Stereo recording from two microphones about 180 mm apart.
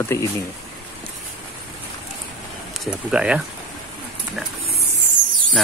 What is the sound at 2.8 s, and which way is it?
Speech, 5° right (ahead or behind).